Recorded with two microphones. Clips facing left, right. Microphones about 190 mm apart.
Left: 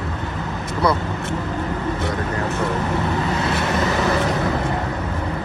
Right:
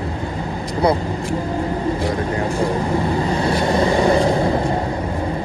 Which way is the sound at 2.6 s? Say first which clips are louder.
Right 3 dB; 30° right (ahead or behind).